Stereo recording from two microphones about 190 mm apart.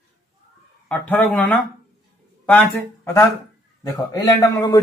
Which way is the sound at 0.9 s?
10° left (ahead or behind).